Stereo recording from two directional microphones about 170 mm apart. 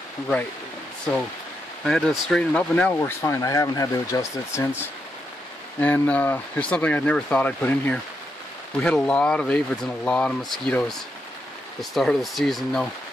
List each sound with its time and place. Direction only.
1.9 s speech: centre (ahead or behind); by 4.6 s 15° left (ahead or behind)
5.8 s speech: 10° left (ahead or behind)